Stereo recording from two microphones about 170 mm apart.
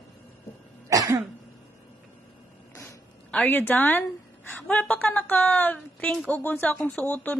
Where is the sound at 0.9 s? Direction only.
20° right (ahead or behind).